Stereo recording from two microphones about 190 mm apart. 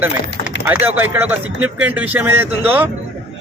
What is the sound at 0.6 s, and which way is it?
Speech, 10° right (ahead or behind).